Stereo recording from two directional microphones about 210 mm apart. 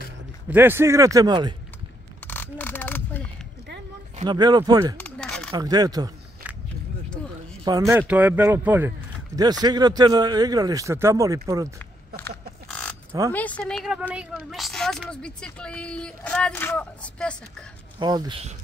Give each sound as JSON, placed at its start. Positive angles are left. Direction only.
{"t": 0.5, "sound": "a man's voice", "side_deg": -10}
{"t": 2.2, "sound": "a sound", "side_deg": 10}
{"t": 4.2, "sound": "speech", "side_deg": -20}
{"t": 4.9, "sound": "a sound", "side_deg": 5}
{"t": 5.5, "sound": "speech", "side_deg": -20}
{"t": 7.6, "sound": "a man's voice", "side_deg": -15}
{"t": 12.2, "sound": "pig", "side_deg": 5}
{"t": 13.3, "sound": "speech", "side_deg": 10}
{"t": 17.9, "sound": "speech", "side_deg": -20}